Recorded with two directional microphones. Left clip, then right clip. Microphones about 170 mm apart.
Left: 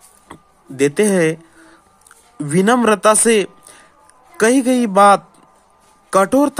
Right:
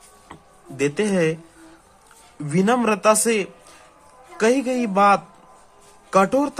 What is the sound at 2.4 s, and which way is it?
Speech, 45° left (ahead or behind).